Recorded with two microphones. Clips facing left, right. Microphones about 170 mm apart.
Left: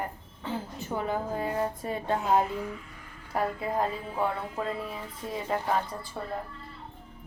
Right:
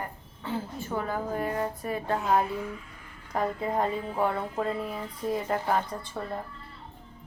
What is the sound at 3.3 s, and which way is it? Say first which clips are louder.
Speech: right 1 dB; 5° left (ahead or behind).